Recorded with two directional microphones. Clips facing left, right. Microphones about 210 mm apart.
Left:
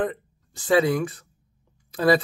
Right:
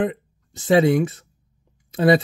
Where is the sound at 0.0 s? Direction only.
20° right (ahead or behind).